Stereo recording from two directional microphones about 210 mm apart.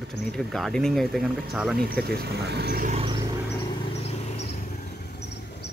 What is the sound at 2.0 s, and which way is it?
Speech, 50° right (ahead or behind).